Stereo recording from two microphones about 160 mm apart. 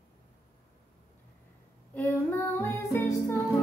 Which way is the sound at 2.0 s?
15° left (ahead or behind).